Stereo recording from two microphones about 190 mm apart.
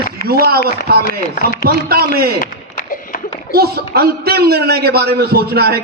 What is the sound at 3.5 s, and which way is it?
A man's voice, 55° right (ahead or behind).